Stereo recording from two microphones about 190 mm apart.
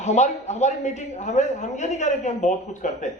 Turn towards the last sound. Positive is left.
turn(degrees=40)  # may be behind; listen again after turning